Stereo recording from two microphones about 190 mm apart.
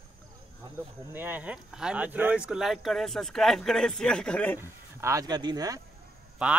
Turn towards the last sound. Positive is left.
turn(degrees=-5)  # may be behind; listen again after turning